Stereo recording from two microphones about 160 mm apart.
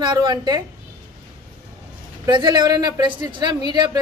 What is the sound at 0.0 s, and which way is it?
Speech, 25° right (ahead or behind).